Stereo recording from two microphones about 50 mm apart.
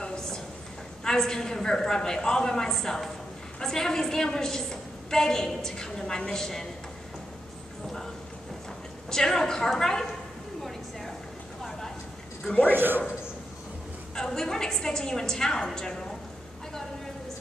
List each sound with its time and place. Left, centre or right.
0.0 s a sound: centre
1.0 s a woman's voice: centre
9.1 s a woman's voice: centre
12.7 s a man's voice: right
14.1 s a woman's voice: centre